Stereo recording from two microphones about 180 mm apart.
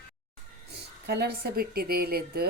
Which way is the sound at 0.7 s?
70° right (ahead or behind).